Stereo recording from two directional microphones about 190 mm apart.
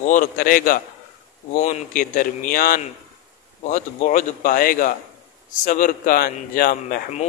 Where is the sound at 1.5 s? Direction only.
35° left (ahead or behind).